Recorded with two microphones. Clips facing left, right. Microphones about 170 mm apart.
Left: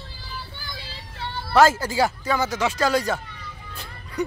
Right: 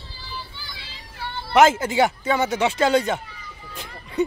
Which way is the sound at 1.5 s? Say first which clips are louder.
Right 1 dB; 20° right (ahead or behind).